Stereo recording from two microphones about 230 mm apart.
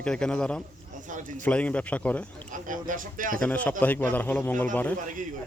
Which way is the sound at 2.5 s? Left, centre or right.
Right.